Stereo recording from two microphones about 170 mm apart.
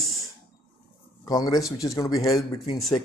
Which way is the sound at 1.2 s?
20° left (ahead or behind).